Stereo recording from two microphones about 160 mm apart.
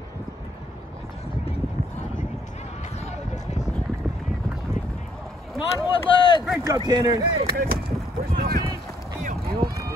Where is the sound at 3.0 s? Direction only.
45° left (ahead or behind).